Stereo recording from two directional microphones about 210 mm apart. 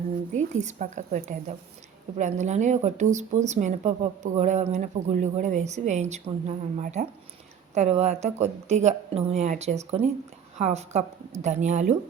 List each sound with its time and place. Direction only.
0.3 s speech: 35° right (ahead or behind)